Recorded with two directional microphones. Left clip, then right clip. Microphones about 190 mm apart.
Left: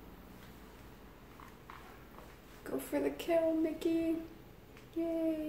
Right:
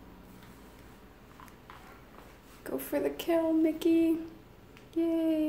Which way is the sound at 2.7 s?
30° right (ahead or behind).